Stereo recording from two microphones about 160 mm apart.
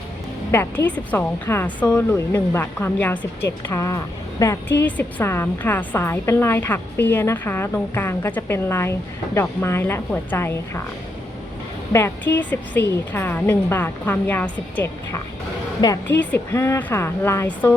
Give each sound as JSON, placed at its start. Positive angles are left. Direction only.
{"t": 0.5, "sound": "speech", "side_deg": 15}
{"t": 11.9, "sound": "speech", "side_deg": 15}
{"t": 15.8, "sound": "a woman's voice", "side_deg": 25}
{"t": 16.3, "sound": "speech", "side_deg": 15}